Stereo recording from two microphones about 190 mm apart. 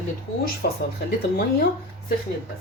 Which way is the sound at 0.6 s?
55° left (ahead or behind).